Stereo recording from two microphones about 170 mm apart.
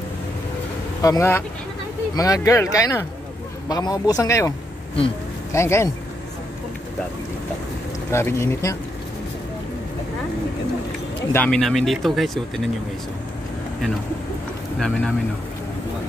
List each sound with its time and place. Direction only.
1.0 s speech: 15° left (ahead or behind)
8.1 s speech: 15° left (ahead or behind)
11.3 s speech: 5° left (ahead or behind)
14.8 s speech: 5° left (ahead or behind)